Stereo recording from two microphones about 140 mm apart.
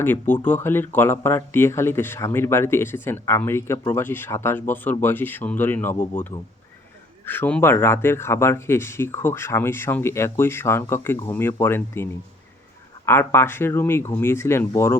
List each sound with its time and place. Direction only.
0.0 s speech: 15° left (ahead or behind)
13.1 s speech: 15° left (ahead or behind)